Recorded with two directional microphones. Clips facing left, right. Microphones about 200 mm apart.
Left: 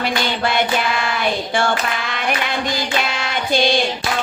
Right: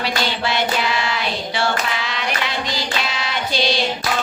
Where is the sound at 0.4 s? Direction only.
50° left (ahead or behind).